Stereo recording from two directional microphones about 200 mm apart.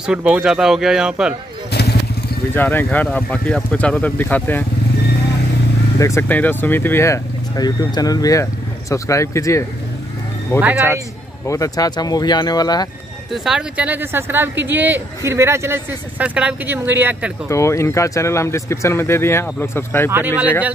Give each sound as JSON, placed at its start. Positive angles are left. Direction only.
{"t": 0.0, "sound": "speech", "side_deg": -5}
{"t": 1.7, "sound": "vehicle", "side_deg": 55}
{"t": 2.5, "sound": "speech", "side_deg": 10}
{"t": 5.9, "sound": "speech", "side_deg": 15}
{"t": 13.3, "sound": "speech", "side_deg": -5}
{"t": 17.5, "sound": "speech", "side_deg": 15}